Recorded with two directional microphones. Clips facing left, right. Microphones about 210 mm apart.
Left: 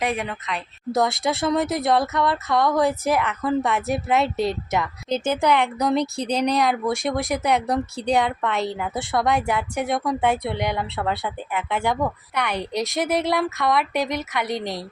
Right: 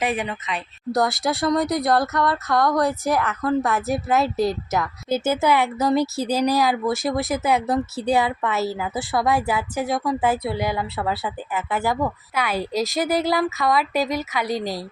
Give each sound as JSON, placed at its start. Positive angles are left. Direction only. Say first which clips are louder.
{"t": 0.0, "sound": "speech", "louder": "right 1 dB", "side_deg": 0}
{"t": 14.5, "sound": "a woman's voice", "louder": "right 3 dB", "side_deg": 25}